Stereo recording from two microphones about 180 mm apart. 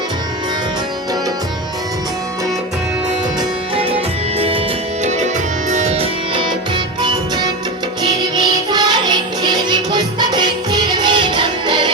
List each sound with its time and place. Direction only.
4.4 s music: 30° right (ahead or behind)